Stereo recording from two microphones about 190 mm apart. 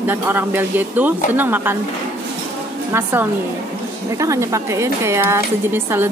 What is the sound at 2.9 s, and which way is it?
Speech, 15° right (ahead or behind).